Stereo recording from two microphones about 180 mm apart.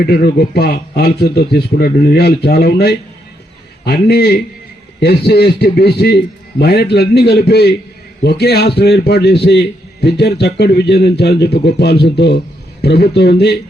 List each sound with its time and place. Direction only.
0.0 s a man's voice: 60° left (ahead or behind)